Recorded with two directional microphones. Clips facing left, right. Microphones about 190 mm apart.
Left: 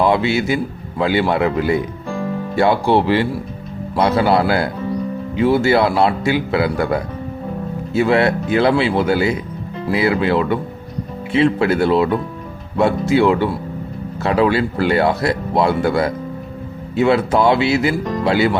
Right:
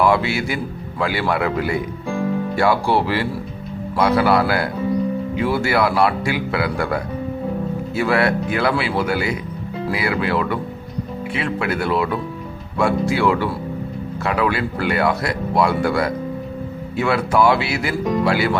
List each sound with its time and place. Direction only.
0.0 s a man's voice: 20° left (ahead or behind)